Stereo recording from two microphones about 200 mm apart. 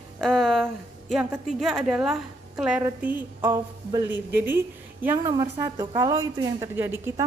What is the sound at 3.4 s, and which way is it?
A woman's voice, 15° right (ahead or behind).